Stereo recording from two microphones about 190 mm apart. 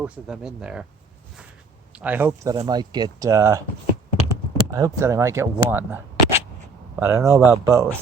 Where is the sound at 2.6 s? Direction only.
20° right (ahead or behind).